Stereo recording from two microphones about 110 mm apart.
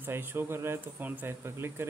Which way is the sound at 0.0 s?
20° right (ahead or behind).